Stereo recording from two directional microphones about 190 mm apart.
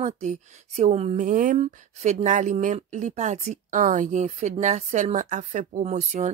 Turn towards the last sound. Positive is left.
turn(degrees=-40)  # may be behind; listen again after turning